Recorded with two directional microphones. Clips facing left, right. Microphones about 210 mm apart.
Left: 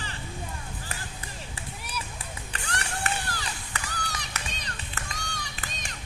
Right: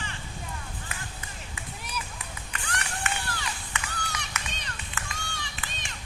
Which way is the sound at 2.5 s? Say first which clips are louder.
Left 1 dB; 35° left (ahead or behind).